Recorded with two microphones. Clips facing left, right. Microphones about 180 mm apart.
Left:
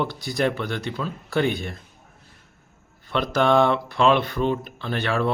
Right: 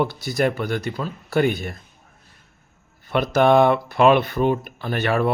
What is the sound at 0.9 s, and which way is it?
Speech, 40° right (ahead or behind).